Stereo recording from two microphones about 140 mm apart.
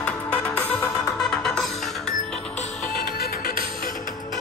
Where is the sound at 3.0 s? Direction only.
80° left.